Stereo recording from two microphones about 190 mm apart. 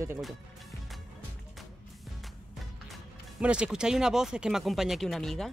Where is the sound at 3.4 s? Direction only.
5° right (ahead or behind).